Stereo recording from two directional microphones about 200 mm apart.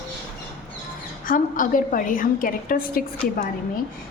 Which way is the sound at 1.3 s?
40° left (ahead or behind).